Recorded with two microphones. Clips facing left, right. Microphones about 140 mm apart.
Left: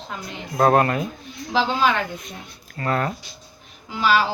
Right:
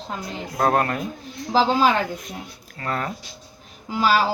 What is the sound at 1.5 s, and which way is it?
Speech, 35° right (ahead or behind).